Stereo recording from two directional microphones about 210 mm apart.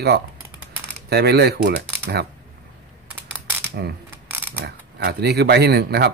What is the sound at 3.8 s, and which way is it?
Speech, 50° right (ahead or behind).